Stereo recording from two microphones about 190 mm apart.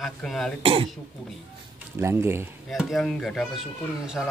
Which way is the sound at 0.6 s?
30° right (ahead or behind).